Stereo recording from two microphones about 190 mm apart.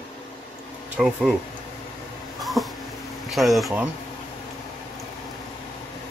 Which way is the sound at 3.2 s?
Centre (ahead or behind).